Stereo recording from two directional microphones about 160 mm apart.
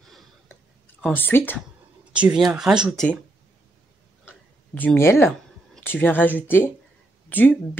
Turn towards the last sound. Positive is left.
turn(degrees=10)  # may be behind; listen again after turning